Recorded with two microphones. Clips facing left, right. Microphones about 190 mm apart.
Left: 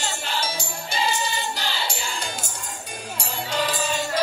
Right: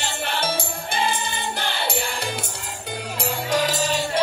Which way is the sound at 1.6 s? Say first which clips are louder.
Right 3 dB; 55° right (ahead or behind).